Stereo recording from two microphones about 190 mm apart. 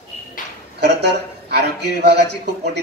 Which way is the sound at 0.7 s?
60° right (ahead or behind).